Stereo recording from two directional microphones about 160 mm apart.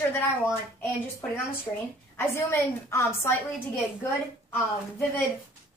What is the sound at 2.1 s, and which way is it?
A woman's voice, 15° left (ahead or behind).